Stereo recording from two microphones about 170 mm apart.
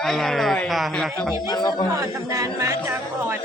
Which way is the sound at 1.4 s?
25° left (ahead or behind).